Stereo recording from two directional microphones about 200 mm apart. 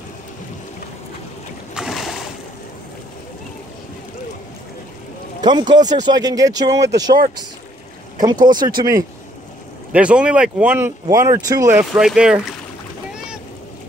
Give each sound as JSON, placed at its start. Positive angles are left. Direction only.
{"t": 1.7, "sound": "a sound", "side_deg": 0}
{"t": 5.4, "sound": "speech", "side_deg": -20}
{"t": 8.6, "sound": "speech", "side_deg": -20}
{"t": 9.9, "sound": "speech", "side_deg": -5}